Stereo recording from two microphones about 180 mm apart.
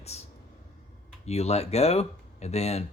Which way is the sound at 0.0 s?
35° left (ahead or behind).